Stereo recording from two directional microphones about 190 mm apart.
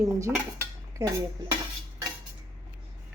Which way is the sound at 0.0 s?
15° right (ahead or behind).